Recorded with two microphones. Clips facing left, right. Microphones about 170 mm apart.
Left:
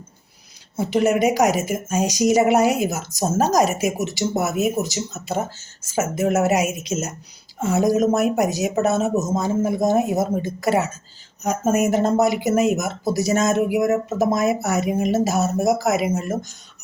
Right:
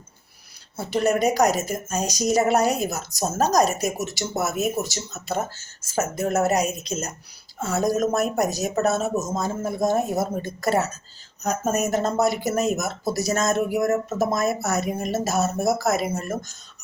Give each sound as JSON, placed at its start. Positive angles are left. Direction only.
{"t": 0.8, "sound": "speech", "side_deg": 15}